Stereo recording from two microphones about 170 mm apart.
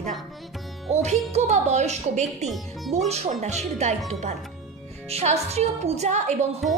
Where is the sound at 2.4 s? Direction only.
Centre (ahead or behind).